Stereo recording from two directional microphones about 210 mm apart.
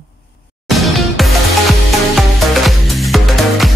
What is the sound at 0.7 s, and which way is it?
Music, centre (ahead or behind).